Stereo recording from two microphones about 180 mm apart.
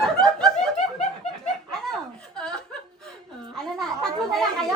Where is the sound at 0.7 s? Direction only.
40° left (ahead or behind).